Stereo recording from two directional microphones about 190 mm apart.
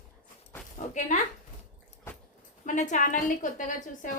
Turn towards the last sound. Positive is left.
turn(degrees=45)  # may be behind; listen again after turning